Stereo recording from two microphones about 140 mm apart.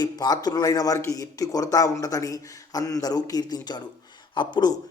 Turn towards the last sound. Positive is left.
turn(degrees=30)  # may be behind; listen again after turning